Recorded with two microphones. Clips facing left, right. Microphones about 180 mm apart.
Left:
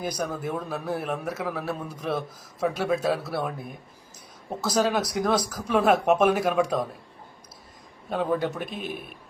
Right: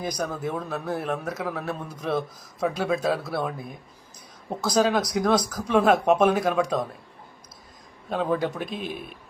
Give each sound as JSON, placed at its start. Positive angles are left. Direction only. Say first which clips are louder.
{"t": 0.0, "sound": "a man's voice", "louder": "right 1 dB", "side_deg": 5}
{"t": 4.6, "sound": "speech", "louder": "right 2 dB", "side_deg": 5}
{"t": 8.1, "sound": "a man's voice", "louder": "right 1 dB", "side_deg": 5}